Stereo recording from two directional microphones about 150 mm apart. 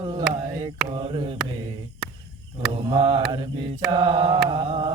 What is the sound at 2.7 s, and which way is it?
Mantra, 40° right (ahead or behind).